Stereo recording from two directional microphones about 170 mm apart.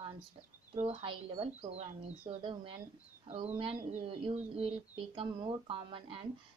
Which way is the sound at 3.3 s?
35° right (ahead or behind).